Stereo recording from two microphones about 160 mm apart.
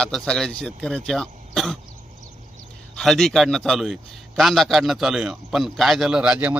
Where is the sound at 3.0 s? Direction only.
Centre (ahead or behind).